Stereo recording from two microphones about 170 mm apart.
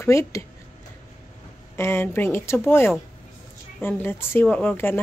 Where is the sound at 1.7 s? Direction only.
15° left (ahead or behind).